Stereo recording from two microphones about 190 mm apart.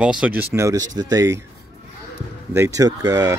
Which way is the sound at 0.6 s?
20° right (ahead or behind).